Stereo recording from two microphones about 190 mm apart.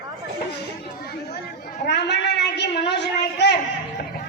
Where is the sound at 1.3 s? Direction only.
60° left (ahead or behind).